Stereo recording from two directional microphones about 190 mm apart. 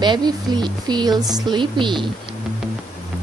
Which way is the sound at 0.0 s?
25° right (ahead or behind).